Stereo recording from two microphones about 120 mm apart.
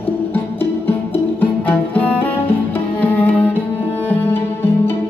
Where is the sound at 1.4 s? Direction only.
15° left (ahead or behind).